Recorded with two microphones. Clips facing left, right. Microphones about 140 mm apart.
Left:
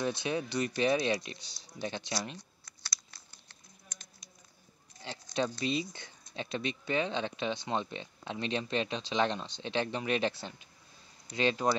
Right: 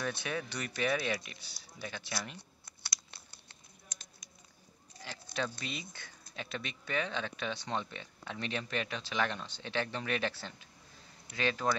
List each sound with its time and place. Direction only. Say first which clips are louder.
0.0 s speech: left 4 dB; 20° left (ahead or behind)
5.0 s speech: left 5 dB; 20° left (ahead or behind)